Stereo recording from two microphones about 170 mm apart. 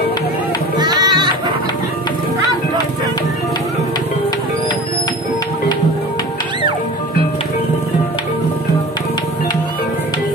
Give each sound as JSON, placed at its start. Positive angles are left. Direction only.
{"t": 0.7, "sound": "music", "side_deg": -25}